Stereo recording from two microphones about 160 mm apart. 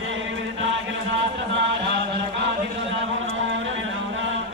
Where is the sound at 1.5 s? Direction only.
90° right.